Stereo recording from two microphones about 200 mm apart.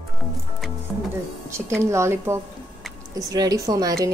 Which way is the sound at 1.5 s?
15° right (ahead or behind).